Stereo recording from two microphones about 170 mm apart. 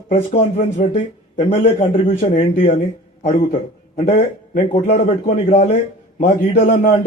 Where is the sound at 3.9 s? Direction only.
40° left (ahead or behind).